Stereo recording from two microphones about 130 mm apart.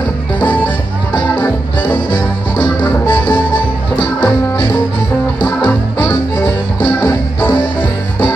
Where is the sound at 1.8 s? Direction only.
40° left (ahead or behind).